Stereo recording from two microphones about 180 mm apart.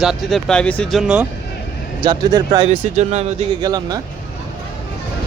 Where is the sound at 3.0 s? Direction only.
40° right (ahead or behind).